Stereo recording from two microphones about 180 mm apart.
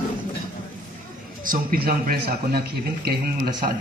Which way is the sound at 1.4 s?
50° right (ahead or behind).